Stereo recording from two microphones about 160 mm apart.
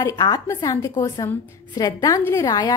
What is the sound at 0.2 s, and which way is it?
A woman's voice, 20° left (ahead or behind).